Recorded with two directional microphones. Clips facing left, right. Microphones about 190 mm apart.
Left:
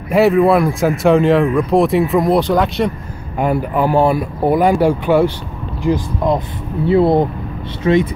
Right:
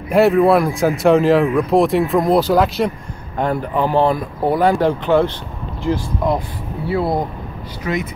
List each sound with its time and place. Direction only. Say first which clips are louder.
0.1 s speech: left 1 dB; centre (ahead or behind)
3.3 s speech: left 2 dB; 10° left (ahead or behind); by 8.1 s 30° left (ahead or behind)